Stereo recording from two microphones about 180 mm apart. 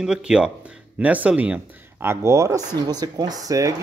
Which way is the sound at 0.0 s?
5° right (ahead or behind).